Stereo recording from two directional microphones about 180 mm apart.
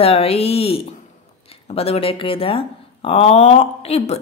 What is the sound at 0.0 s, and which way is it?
Speech, 35° left (ahead or behind).